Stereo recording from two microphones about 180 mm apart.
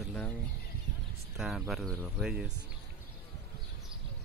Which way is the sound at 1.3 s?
Centre (ahead or behind).